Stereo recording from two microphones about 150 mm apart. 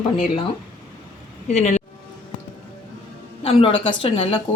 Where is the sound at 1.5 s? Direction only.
45° left (ahead or behind).